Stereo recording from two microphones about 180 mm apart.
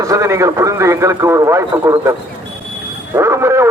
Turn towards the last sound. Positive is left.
turn(degrees=-15)  # may be behind; listen again after turning